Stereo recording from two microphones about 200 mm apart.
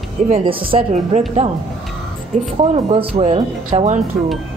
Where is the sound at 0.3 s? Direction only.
25° right (ahead or behind).